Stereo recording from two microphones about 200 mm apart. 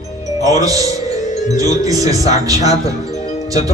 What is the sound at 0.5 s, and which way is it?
Speech, 15° right (ahead or behind).